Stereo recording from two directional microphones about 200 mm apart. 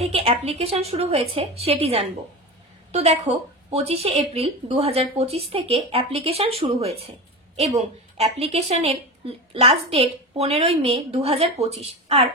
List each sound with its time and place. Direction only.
0.0 s speech: 30° right (ahead or behind)